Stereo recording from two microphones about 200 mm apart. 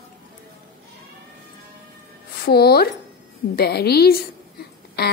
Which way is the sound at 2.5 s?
50° left (ahead or behind).